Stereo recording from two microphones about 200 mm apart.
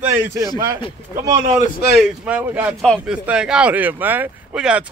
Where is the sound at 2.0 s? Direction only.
5° right (ahead or behind).